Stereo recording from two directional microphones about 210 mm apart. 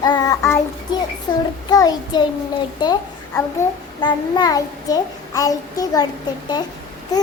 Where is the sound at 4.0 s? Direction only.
20° left (ahead or behind).